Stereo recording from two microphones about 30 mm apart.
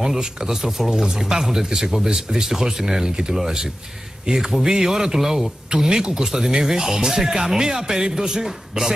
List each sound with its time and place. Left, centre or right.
0.0 s speech: centre
1.0 s speech: right
5.8 s a man's voice: right